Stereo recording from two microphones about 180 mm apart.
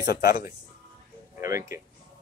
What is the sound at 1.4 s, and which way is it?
Speech, 15° right (ahead or behind).